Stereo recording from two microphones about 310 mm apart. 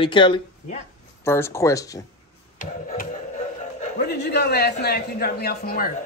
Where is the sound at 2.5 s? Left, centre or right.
Left.